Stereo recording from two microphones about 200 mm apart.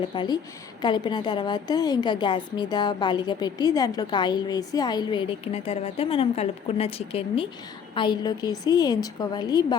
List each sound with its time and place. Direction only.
0.1 s a woman's voice: 25° left (ahead or behind)